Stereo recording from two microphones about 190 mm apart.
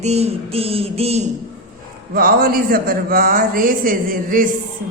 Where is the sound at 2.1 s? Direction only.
50° right (ahead or behind).